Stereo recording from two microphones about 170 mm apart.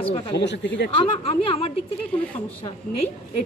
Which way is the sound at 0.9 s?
35° left (ahead or behind).